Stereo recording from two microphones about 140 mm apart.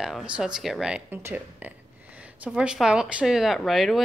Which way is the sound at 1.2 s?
20° right (ahead or behind).